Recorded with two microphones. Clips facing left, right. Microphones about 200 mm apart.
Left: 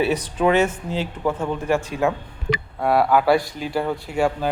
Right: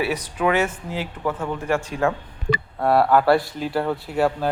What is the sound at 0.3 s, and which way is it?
Speech, 25° left (ahead or behind).